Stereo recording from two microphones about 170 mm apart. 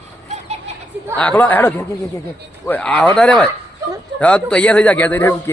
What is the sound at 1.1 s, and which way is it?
Speech, 10° left (ahead or behind).